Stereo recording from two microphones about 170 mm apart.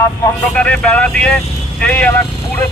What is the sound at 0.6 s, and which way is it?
Speech, 5° left (ahead or behind).